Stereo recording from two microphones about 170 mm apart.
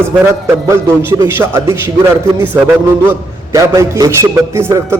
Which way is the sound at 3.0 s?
20° right (ahead or behind).